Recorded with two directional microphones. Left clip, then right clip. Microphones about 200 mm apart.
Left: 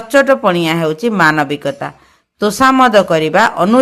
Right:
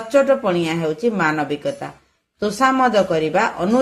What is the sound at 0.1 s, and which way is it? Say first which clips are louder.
Speech: left 5 dB; 30° left (ahead or behind).